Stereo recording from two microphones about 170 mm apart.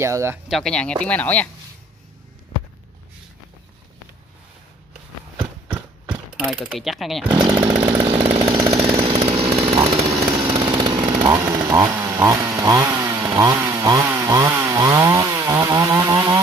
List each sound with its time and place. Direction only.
0.0 s speech: 15° right (ahead or behind)
0.5 s speech: 5° left (ahead or behind)
6.4 s speech: centre (ahead or behind)
7.2 s speech: 25° right (ahead or behind)
7.8 s chainsaw: 30° right (ahead or behind)
9.9 s chainsaw: 20° right (ahead or behind)